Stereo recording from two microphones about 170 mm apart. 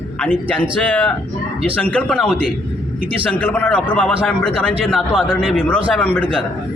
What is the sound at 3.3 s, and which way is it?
A man's voice, 10° left (ahead or behind).